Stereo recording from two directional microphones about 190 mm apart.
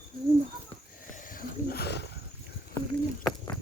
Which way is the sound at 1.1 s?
50° left (ahead or behind).